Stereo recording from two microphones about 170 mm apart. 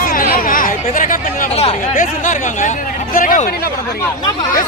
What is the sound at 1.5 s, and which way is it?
Speech, 35° left (ahead or behind).